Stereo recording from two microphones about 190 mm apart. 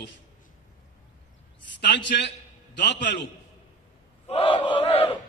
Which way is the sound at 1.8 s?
65° left (ahead or behind).